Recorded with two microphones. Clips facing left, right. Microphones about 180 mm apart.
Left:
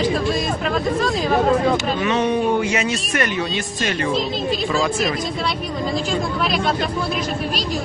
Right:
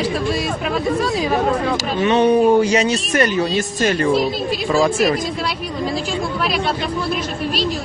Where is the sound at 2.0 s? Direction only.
35° right (ahead or behind).